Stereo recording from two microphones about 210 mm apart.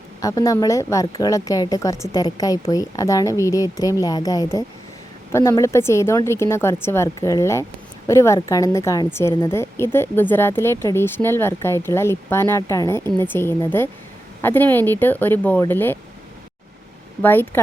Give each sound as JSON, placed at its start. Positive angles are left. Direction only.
{"t": 0.2, "sound": "speech", "side_deg": 15}
{"t": 17.2, "sound": "speech", "side_deg": 10}